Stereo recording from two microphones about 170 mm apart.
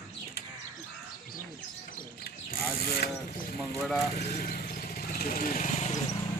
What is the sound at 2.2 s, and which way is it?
Ratchet, 65° left (ahead or behind).